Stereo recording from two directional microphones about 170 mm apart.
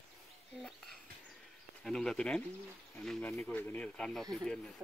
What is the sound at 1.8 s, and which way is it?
Speech, 5° left (ahead or behind).